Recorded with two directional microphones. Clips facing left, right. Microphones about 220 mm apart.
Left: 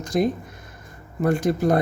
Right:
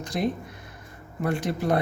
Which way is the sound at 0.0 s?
45° left (ahead or behind).